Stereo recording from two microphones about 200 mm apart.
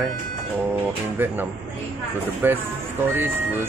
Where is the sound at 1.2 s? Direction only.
10° right (ahead or behind).